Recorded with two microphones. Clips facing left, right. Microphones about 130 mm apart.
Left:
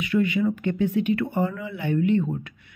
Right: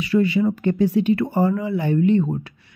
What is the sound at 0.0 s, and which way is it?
A woman's voice, 35° right (ahead or behind).